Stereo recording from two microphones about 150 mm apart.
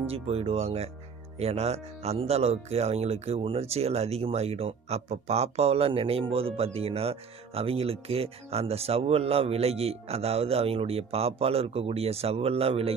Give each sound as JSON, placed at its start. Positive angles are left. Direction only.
{"t": 0.0, "sound": "speech", "side_deg": -40}